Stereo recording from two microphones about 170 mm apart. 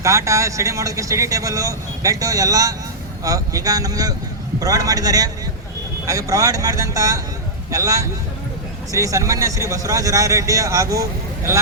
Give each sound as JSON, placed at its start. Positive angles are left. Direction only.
{"t": 0.0, "sound": "speech", "side_deg": -15}